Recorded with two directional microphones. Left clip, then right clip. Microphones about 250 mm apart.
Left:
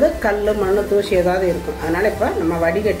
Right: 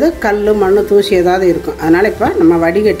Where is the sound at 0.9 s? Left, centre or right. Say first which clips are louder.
Right 6 dB; right.